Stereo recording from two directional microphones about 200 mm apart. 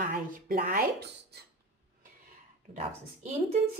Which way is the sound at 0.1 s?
45° right (ahead or behind).